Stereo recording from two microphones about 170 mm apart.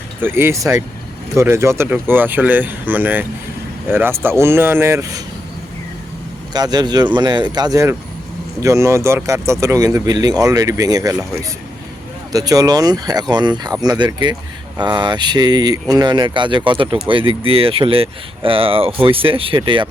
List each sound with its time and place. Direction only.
0.2 s speech: 15° right (ahead or behind)
6.5 s speech: 25° right (ahead or behind)
12.3 s speech: 20° right (ahead or behind)